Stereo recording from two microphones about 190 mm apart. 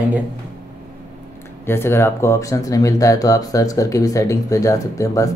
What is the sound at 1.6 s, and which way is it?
Speech, 10° left (ahead or behind).